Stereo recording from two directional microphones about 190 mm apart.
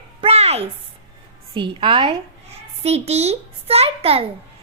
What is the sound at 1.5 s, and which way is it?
A woman's voice, 25° right (ahead or behind).